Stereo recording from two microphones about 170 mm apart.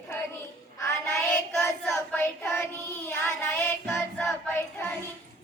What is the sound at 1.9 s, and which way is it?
Child singing, 15° left (ahead or behind).